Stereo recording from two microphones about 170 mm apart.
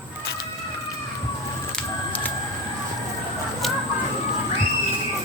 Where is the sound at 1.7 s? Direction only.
10° left (ahead or behind).